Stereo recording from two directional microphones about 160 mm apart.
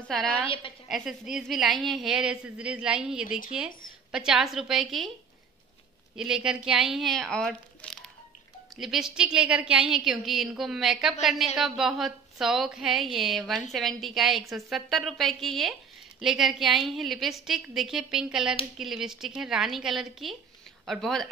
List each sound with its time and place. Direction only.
0.1 s a woman's voice: 5° left (ahead or behind)
0.5 s a woman's voice: 35° left (ahead or behind)
0.8 s a woman's voice: centre (ahead or behind)
6.1 s a woman's voice: 5° right (ahead or behind)